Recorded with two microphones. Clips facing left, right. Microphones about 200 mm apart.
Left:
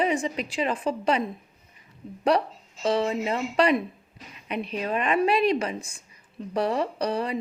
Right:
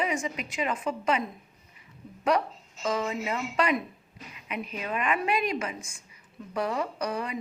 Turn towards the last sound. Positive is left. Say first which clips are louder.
# left 5 dB
turn(degrees=35)  # may be behind; listen again after turning